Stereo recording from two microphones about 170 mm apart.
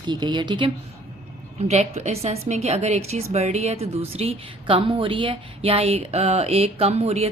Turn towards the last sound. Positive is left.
turn(degrees=-40)  # may be behind; listen again after turning